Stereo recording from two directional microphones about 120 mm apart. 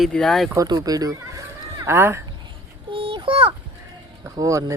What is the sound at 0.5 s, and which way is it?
Speech, 30° right (ahead or behind).